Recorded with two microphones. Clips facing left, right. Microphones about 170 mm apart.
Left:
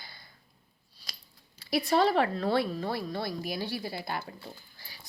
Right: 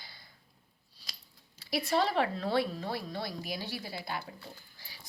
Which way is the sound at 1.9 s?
50° left (ahead or behind).